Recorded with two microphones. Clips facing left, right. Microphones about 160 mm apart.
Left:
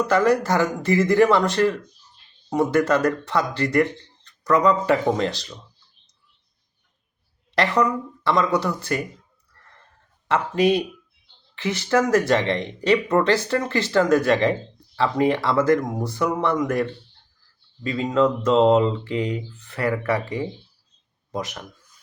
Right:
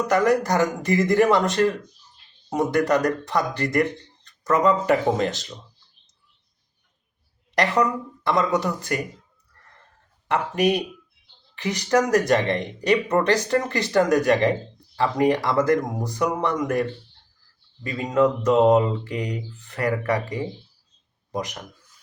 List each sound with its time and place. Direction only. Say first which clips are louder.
0.0 s speech: left 1 dB; 20° right (ahead or behind)
7.5 s speech: left 1 dB; 20° right (ahead or behind)
10.2 s speech: left 2 dB; 15° right (ahead or behind)
17.8 s speech: even; 20° right (ahead or behind)
21.3 s speech: even; 15° right (ahead or behind)